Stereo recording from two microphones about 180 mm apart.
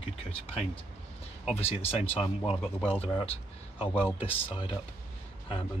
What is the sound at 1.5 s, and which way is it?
Speech, 35° left (ahead or behind).